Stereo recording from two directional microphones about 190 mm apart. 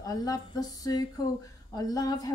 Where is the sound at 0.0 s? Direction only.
20° left (ahead or behind).